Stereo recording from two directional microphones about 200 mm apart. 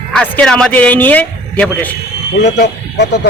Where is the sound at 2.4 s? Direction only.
60° left (ahead or behind).